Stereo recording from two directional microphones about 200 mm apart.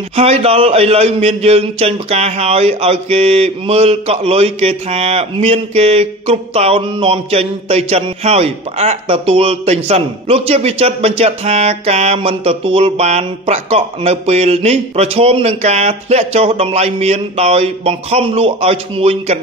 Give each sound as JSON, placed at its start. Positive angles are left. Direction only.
{"t": 0.1, "sound": "a man's voice", "side_deg": -30}